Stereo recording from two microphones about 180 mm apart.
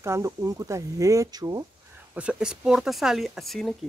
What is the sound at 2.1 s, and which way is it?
Speech, 5° right (ahead or behind).